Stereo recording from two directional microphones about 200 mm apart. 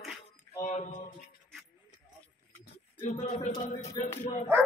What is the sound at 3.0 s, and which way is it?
Speech, 35° left (ahead or behind).